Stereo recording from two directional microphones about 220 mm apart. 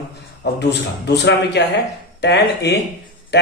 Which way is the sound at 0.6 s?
50° left (ahead or behind).